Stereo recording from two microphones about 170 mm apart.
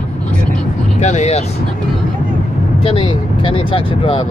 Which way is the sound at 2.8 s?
30° left (ahead or behind).